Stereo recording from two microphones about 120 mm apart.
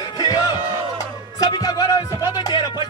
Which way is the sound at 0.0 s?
35° left (ahead or behind).